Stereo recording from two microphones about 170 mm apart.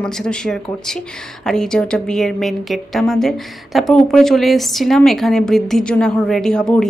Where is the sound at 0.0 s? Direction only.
5° left (ahead or behind).